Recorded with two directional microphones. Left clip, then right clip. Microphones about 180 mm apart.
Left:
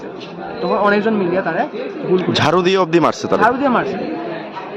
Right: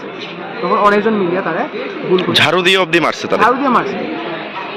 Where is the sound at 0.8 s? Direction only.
15° left (ahead or behind).